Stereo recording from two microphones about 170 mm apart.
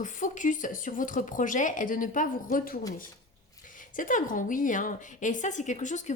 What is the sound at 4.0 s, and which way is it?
A woman's voice, 50° left (ahead or behind).